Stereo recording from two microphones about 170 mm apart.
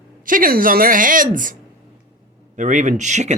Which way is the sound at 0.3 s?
55° right (ahead or behind).